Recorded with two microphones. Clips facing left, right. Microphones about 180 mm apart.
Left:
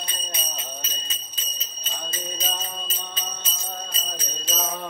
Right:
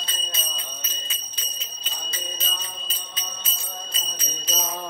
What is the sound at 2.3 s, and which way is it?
Music, 45° left (ahead or behind).